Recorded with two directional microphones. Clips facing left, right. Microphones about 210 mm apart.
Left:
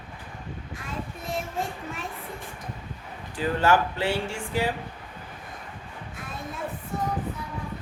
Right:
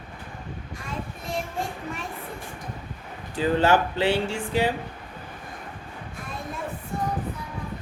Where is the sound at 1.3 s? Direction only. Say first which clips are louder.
Right 1 dB; centre (ahead or behind).